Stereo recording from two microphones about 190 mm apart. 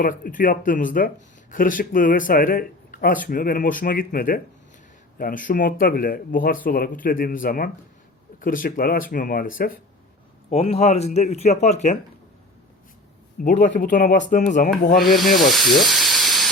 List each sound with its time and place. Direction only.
0.0 s speech: 45° left (ahead or behind)
10.5 s speech: 35° left (ahead or behind)
13.4 s speech: 40° left (ahead or behind)
15.0 s speech: centre (ahead or behind)